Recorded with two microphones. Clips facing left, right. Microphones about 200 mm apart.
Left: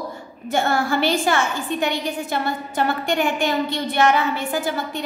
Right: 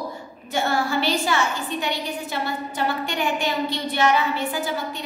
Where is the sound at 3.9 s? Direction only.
50° left (ahead or behind).